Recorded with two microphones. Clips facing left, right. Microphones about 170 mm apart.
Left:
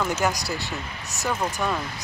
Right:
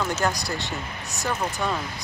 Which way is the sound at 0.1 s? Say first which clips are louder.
Left 1 dB; 10° left (ahead or behind).